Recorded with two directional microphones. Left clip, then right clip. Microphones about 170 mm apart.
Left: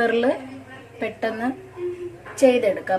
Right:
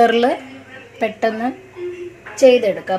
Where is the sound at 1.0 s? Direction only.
60° right (ahead or behind).